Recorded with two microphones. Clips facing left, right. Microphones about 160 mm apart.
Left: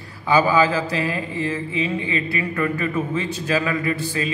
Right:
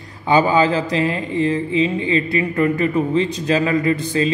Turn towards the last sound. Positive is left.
turn(degrees=-30)  # may be behind; listen again after turning